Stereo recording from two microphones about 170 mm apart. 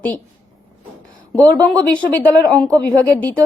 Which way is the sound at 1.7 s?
10° left (ahead or behind).